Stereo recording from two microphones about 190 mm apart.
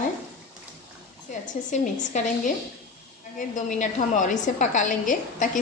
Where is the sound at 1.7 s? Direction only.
40° left (ahead or behind).